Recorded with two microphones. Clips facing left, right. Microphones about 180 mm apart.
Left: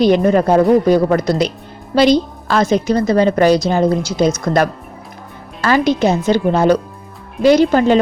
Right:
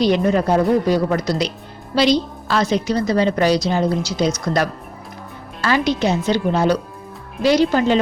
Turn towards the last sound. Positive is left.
turn(degrees=50)  # may be behind; listen again after turning